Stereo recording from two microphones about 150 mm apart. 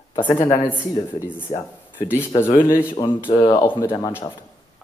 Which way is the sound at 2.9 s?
30° left (ahead or behind).